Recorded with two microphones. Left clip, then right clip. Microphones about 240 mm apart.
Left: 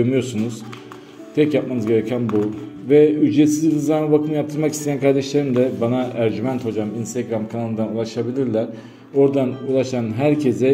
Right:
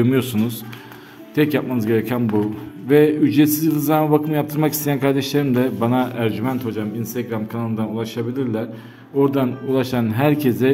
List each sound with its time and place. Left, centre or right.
0.0 s a man's voice: right